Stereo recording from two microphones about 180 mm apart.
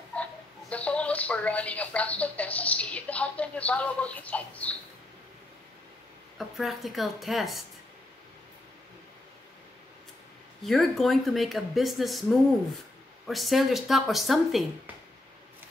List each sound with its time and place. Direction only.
0.1 s speech: 5° left (ahead or behind)
6.3 s speech: centre (ahead or behind)
10.6 s speech: centre (ahead or behind)